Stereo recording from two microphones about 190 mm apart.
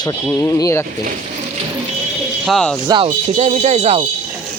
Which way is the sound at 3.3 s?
35° right (ahead or behind).